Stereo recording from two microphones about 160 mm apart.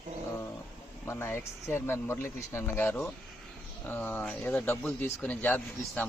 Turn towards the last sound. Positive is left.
turn(degrees=10)  # may be behind; listen again after turning